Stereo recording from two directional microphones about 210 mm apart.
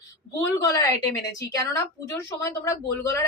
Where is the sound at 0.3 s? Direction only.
15° left (ahead or behind).